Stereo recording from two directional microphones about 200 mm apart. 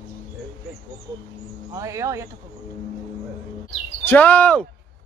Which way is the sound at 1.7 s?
15° right (ahead or behind).